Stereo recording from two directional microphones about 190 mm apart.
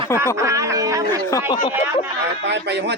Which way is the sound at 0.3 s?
15° right (ahead or behind).